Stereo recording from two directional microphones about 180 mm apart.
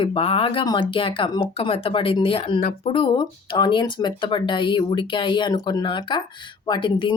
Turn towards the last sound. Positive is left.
turn(degrees=25)  # may be behind; listen again after turning